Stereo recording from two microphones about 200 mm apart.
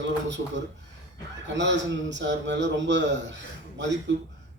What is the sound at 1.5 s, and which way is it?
A man's voice, 65° right (ahead or behind).